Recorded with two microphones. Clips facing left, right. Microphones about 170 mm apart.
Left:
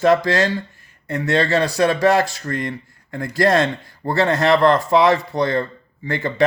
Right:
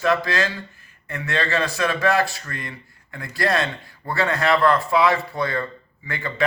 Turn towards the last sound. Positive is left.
turn(degrees=40)  # may be behind; listen again after turning